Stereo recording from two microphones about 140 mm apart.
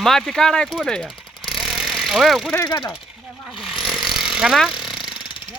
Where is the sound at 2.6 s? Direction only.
25° left (ahead or behind).